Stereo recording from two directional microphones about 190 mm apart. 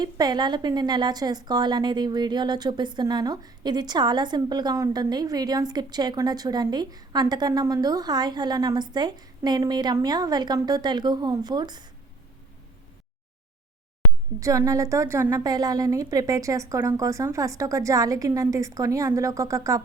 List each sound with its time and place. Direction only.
0.0 s a woman's voice: 20° right (ahead or behind)
14.3 s a woman's voice: 15° right (ahead or behind)